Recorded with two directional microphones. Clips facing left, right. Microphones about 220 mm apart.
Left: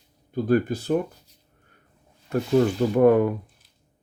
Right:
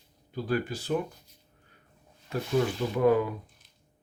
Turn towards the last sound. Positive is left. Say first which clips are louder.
# left 7 dB
turn(degrees=55)  # may be behind; listen again after turning